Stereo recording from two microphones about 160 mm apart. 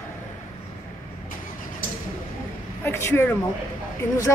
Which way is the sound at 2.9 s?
15° left (ahead or behind).